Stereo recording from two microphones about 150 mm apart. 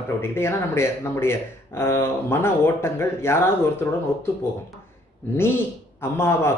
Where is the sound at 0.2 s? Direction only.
15° left (ahead or behind).